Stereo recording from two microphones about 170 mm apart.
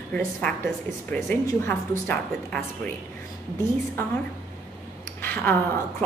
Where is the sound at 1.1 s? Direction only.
5° left (ahead or behind).